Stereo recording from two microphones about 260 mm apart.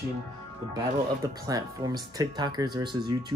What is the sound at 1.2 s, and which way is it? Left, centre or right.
Speech, centre.